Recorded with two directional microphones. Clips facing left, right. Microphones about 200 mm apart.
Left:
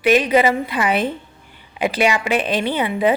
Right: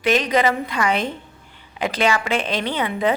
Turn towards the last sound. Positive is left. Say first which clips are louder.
# left 3 dB
turn(degrees=10)  # may be behind; listen again after turning